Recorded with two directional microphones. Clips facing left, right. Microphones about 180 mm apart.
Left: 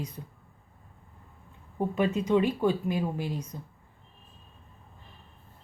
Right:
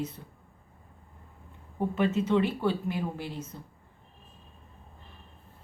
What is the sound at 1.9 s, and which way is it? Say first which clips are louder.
A woman's voice: left 1 dB; 15° left (ahead or behind).